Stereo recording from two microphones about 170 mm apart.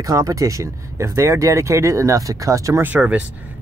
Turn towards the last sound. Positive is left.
turn(degrees=-10)  # may be behind; listen again after turning